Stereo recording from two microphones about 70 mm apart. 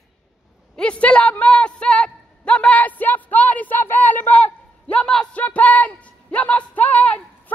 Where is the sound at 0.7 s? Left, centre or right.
Centre.